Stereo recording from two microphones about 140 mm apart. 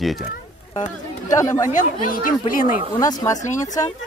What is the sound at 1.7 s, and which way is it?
Speech, 75° left (ahead or behind).